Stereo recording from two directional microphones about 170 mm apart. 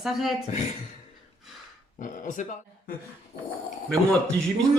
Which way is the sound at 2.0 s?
50° left (ahead or behind).